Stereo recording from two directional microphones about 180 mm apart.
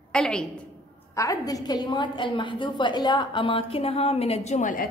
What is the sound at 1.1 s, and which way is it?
A woman's voice, 20° left (ahead or behind).